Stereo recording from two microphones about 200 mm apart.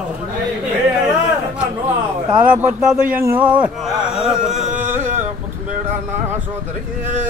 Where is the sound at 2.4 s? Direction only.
5° right (ahead or behind).